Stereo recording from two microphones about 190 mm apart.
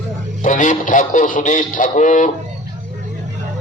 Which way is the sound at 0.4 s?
40° left (ahead or behind).